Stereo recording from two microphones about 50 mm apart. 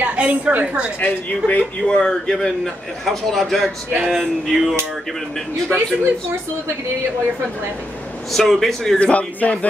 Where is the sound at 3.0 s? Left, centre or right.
Centre.